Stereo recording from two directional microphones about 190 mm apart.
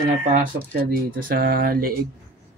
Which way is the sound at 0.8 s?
50° right (ahead or behind).